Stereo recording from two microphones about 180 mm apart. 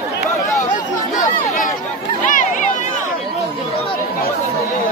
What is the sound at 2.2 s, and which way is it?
Chatter, 45° left (ahead or behind).